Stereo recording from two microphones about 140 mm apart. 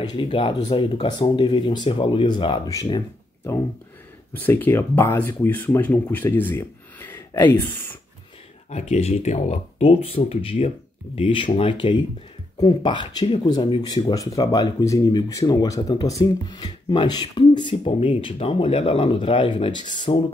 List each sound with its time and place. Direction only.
0.0 s speech: 35° left (ahead or behind)
4.3 s speech: 15° left (ahead or behind)
8.6 s speech: 50° left (ahead or behind); by 20.2 s 35° left (ahead or behind)